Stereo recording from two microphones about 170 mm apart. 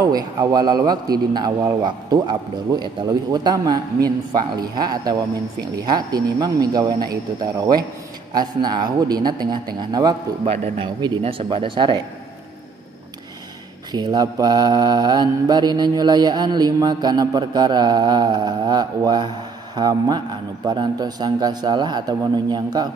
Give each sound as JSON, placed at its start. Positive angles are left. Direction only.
{"t": 0.0, "sound": "mantra", "side_deg": -20}
{"t": 8.3, "sound": "mantra", "side_deg": -25}
{"t": 10.4, "sound": "speech", "side_deg": -35}
{"t": 11.0, "sound": "mantra", "side_deg": -30}
{"t": 13.9, "sound": "mantra", "side_deg": -25}